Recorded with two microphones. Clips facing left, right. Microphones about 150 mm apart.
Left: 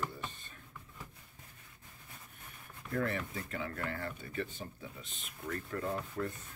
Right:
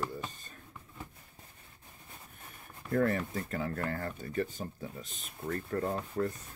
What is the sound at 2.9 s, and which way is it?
Speech, 40° right (ahead or behind).